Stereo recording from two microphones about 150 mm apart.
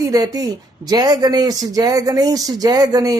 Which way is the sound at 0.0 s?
25° right (ahead or behind).